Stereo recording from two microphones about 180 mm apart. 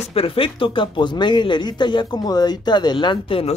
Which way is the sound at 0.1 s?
30° left (ahead or behind).